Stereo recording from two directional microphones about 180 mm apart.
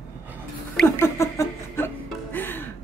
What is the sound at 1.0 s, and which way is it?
Music, 15° left (ahead or behind).